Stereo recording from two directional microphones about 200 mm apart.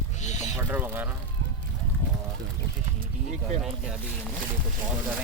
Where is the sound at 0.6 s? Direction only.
10° right (ahead or behind).